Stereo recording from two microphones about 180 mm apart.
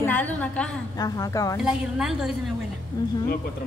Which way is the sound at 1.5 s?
5° right (ahead or behind).